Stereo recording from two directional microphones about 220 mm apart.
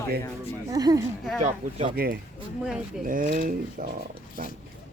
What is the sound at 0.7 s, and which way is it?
Speech, 15° right (ahead or behind).